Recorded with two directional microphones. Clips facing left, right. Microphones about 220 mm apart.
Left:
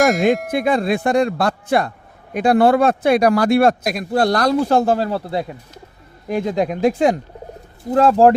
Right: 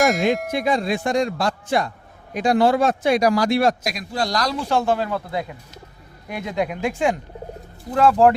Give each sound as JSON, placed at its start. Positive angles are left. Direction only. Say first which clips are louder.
{"t": 0.0, "sound": "speech", "louder": "left 3 dB", "side_deg": 0}
{"t": 0.5, "sound": "speech", "louder": "left 4 dB", "side_deg": 55}